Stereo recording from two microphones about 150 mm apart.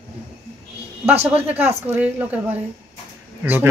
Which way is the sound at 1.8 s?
10° right (ahead or behind).